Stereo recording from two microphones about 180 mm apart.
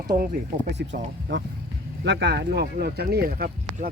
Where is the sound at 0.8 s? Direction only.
70° right (ahead or behind); by 3.8 s 50° right (ahead or behind).